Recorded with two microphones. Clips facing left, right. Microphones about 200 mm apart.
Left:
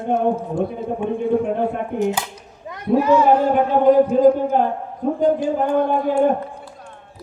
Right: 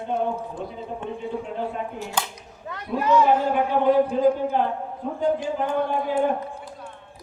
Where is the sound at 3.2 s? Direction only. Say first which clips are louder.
Left 5 dB; 45° left (ahead or behind).